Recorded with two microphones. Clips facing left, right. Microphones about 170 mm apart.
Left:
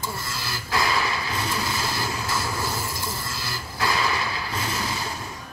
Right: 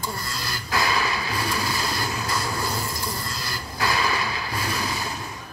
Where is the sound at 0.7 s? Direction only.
25° left (ahead or behind).